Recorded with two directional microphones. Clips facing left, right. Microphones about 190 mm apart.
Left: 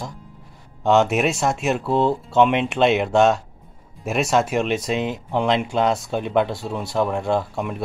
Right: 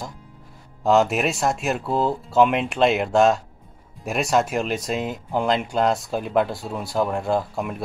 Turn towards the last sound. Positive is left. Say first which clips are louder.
# left 1 dB
turn(degrees=0)  # may be behind; listen again after turning